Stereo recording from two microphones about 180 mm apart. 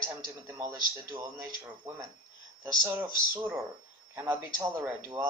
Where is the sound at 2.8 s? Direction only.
10° right (ahead or behind).